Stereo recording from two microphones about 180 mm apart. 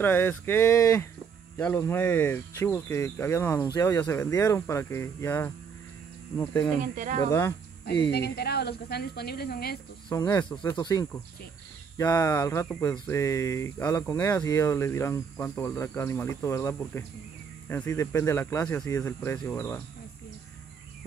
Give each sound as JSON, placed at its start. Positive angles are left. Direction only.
{"t": 0.0, "sound": "speech", "side_deg": 10}
{"t": 6.8, "sound": "speech", "side_deg": -45}
{"t": 7.2, "sound": "speech", "side_deg": 15}
{"t": 8.1, "sound": "speech", "side_deg": 65}
{"t": 10.1, "sound": "speech", "side_deg": 15}